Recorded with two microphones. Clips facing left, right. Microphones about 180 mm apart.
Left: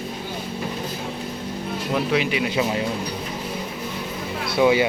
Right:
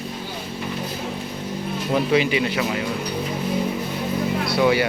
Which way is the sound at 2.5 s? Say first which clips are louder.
Left 1 dB; 20° left (ahead or behind).